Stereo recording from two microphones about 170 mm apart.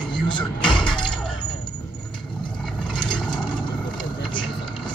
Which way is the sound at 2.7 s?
5° left (ahead or behind).